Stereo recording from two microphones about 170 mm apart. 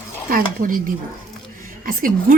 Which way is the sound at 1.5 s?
55° right (ahead or behind).